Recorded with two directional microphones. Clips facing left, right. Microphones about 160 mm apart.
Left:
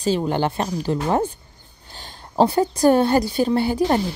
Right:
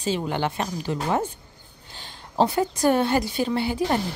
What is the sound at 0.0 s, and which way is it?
A woman's voice, 35° left (ahead or behind).